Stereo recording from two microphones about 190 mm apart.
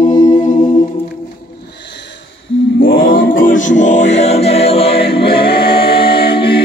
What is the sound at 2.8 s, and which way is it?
Music, 90° left.